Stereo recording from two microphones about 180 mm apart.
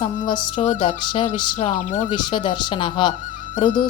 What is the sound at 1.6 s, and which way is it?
Speech, 40° left (ahead or behind).